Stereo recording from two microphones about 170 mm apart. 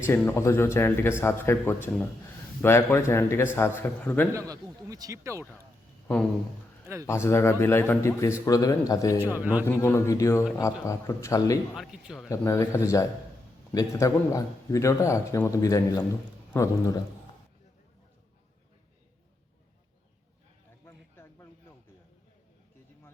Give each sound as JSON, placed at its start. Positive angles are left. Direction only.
{"t": 0.1, "sound": "a man's voice", "side_deg": 15}
{"t": 4.4, "sound": "speech", "side_deg": -20}
{"t": 6.8, "sound": "a man's voice", "side_deg": -15}
{"t": 7.1, "sound": "a man's voice", "side_deg": 15}
{"t": 9.4, "sound": "speech", "side_deg": -10}
{"t": 9.6, "sound": "a man's voice", "side_deg": 15}
{"t": 11.8, "sound": "speech", "side_deg": 0}
{"t": 12.5, "sound": "a man's voice", "side_deg": 15}
{"t": 20.8, "sound": "a sound", "side_deg": 15}